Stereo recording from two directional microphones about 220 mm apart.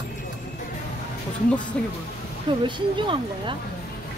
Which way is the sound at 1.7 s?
5° left (ahead or behind).